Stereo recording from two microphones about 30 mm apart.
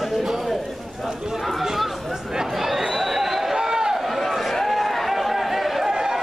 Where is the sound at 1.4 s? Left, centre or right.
Centre.